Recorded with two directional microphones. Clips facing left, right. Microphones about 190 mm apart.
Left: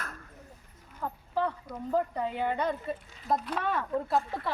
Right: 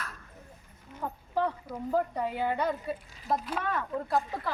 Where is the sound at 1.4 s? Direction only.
10° right (ahead or behind).